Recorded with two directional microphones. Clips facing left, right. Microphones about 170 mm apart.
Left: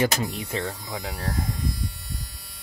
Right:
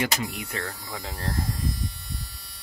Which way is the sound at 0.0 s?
25° left (ahead or behind).